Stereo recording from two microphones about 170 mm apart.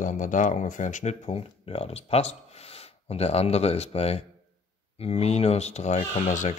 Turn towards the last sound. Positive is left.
turn(degrees=45)  # may be behind; listen again after turning